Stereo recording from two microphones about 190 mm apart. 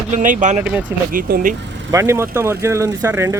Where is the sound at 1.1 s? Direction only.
45° right (ahead or behind).